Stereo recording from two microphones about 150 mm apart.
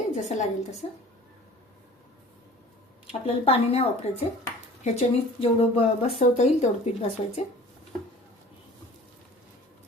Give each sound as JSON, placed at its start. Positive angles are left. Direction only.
{"t": 0.1, "sound": "a woman's voice", "side_deg": 50}
{"t": 0.8, "sound": "speech", "side_deg": 40}
{"t": 3.1, "sound": "speech", "side_deg": 40}